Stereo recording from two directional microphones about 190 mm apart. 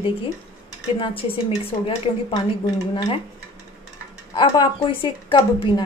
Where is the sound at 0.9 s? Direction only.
25° left (ahead or behind).